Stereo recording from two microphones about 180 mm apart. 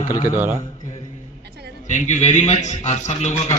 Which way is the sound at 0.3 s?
10° right (ahead or behind).